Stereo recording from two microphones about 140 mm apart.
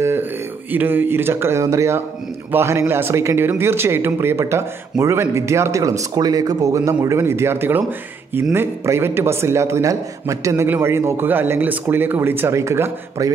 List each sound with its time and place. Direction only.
0.0 s a man's voice: 15° right (ahead or behind)